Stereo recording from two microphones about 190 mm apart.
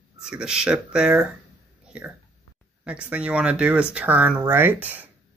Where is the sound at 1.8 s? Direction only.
5° right (ahead or behind).